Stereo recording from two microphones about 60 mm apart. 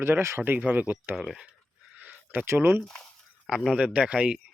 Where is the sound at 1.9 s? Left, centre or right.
Centre.